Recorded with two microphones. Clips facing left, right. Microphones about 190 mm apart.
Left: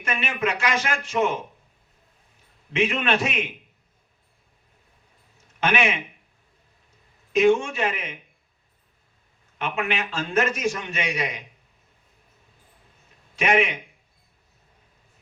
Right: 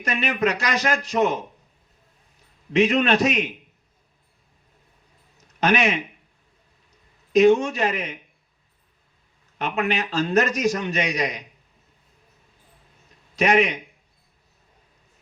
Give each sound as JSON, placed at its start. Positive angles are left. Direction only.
{"t": 0.0, "sound": "a man's voice", "side_deg": -40}
{"t": 2.7, "sound": "a man's voice", "side_deg": -40}
{"t": 5.5, "sound": "a man's voice", "side_deg": -40}
{"t": 7.3, "sound": "a man's voice", "side_deg": -40}
{"t": 9.6, "sound": "a man's voice", "side_deg": -35}
{"t": 13.3, "sound": "a man's voice", "side_deg": -40}